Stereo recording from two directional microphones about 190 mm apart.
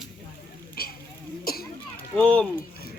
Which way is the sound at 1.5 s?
50° left (ahead or behind).